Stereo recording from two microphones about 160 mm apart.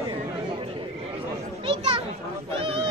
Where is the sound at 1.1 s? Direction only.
30° right (ahead or behind).